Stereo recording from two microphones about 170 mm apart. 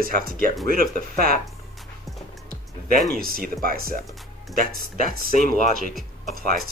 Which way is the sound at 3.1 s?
60° right (ahead or behind).